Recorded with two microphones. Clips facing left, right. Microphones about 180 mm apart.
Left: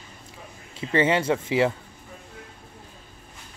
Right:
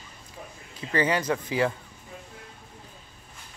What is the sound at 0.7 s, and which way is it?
Speech, 25° left (ahead or behind).